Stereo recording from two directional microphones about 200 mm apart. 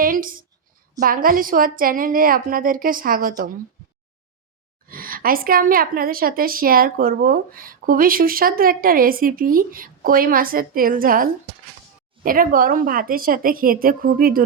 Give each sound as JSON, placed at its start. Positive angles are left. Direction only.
{"t": 0.0, "sound": "a woman's voice", "side_deg": -45}
{"t": 4.9, "sound": "a woman's voice", "side_deg": -45}